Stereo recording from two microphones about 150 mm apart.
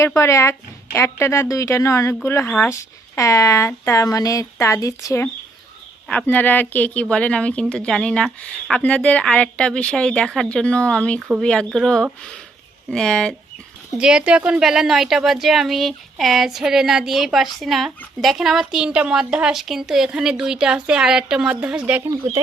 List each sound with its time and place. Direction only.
0.0 s speech: 20° left (ahead or behind)
11.2 s speech: 5° right (ahead or behind)
14.0 s speech: 5° right (ahead or behind)